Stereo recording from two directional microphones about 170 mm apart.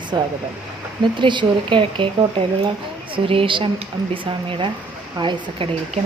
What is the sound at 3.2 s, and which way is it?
A woman's voice, 30° right (ahead or behind).